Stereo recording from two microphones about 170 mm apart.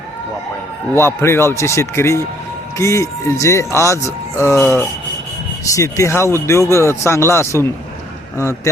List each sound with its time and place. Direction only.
0.9 s speech: 15° left (ahead or behind)